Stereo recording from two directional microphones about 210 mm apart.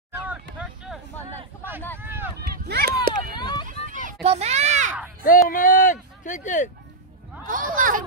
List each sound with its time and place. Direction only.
0.2 s hubbub: 5° right (ahead or behind)
2.0 s run: 10° right (ahead or behind)
2.4 s run: 45° right (ahead or behind)
3.3 s run: 20° left (ahead or behind)
3.6 s children playing: 40° right (ahead or behind)
5.2 s speech: 40° left (ahead or behind)
7.4 s speech: 40° right (ahead or behind)